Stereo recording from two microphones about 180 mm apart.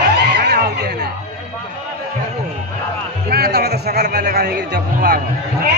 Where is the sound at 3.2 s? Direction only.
60° right (ahead or behind).